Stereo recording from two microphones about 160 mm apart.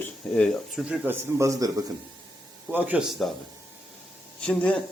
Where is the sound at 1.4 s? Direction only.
20° right (ahead or behind).